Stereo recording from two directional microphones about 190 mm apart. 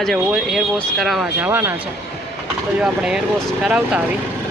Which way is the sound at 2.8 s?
5° right (ahead or behind).